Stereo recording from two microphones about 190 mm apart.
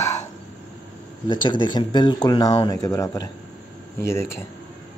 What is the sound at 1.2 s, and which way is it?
Speech, 25° left (ahead or behind).